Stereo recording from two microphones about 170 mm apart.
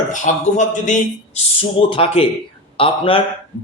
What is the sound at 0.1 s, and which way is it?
A man's voice, 45° left (ahead or behind).